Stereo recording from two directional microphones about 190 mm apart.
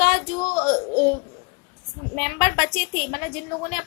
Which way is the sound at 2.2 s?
40° left (ahead or behind).